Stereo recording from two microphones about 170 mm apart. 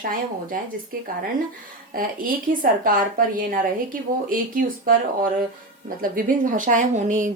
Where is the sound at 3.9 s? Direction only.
55° right (ahead or behind).